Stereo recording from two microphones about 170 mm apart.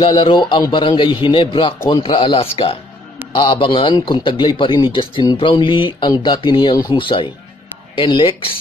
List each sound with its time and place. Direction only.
0.0 s a man's voice: 30° left (ahead or behind)